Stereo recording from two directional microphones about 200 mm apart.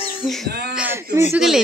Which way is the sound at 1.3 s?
Centre (ahead or behind).